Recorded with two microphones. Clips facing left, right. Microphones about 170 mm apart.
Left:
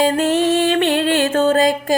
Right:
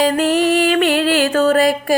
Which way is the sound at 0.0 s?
25° left (ahead or behind).